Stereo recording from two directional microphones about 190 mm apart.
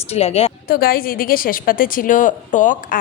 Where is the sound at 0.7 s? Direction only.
50° left (ahead or behind).